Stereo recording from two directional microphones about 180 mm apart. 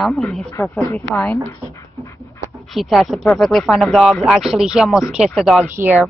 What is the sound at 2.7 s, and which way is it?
Speech, centre (ahead or behind).